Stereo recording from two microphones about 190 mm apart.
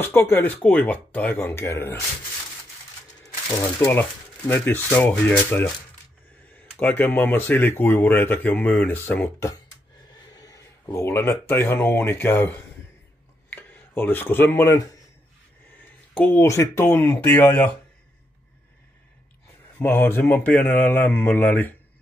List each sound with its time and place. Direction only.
0.0 s speech: 10° left (ahead or behind)
4.5 s speech: 10° left (ahead or behind)
16.2 s speech: 10° left (ahead or behind)
19.8 s speech: 10° left (ahead or behind)